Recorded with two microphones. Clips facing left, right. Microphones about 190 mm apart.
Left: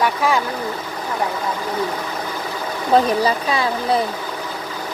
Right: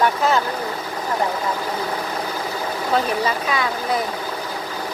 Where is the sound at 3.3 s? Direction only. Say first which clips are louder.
Left 3 dB; 30° left (ahead or behind).